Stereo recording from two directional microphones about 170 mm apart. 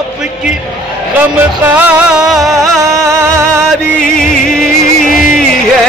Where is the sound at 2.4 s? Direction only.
20° right (ahead or behind).